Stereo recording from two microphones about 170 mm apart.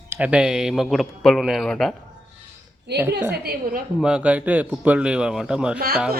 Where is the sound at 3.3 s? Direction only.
65° right (ahead or behind).